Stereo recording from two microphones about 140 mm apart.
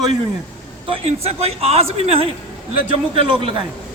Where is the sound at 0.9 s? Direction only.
45° right (ahead or behind).